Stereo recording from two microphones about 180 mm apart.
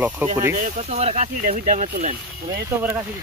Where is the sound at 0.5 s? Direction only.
40° right (ahead or behind).